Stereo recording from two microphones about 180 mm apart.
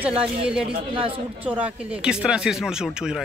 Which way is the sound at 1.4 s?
5° right (ahead or behind).